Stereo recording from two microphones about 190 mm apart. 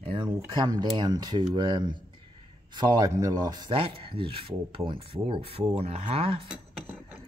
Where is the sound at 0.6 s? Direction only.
20° right (ahead or behind).